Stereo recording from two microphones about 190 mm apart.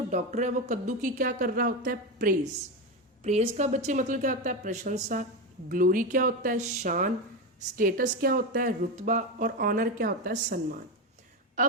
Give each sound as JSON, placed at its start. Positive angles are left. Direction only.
{"t": 0.1, "sound": "speech", "side_deg": -40}
{"t": 3.2, "sound": "a woman's voice", "side_deg": -35}